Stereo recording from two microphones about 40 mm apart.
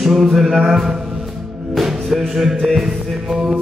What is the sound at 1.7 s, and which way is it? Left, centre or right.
Music, centre.